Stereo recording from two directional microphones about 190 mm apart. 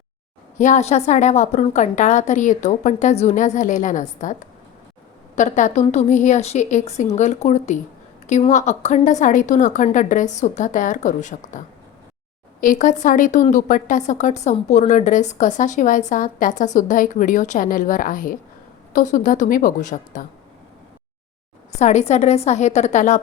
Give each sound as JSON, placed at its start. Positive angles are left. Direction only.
{"t": 0.6, "sound": "a woman's voice", "side_deg": 35}
{"t": 5.4, "sound": "a woman's voice", "side_deg": 40}
{"t": 21.8, "sound": "a woman's voice", "side_deg": 35}